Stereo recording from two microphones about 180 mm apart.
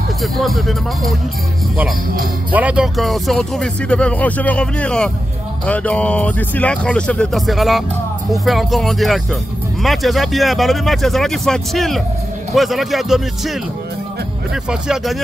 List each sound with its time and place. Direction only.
0.2 s speech: centre (ahead or behind)
2.5 s speech: 5° right (ahead or behind)